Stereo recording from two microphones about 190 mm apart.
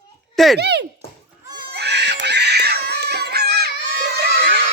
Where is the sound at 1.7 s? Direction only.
65° right (ahead or behind).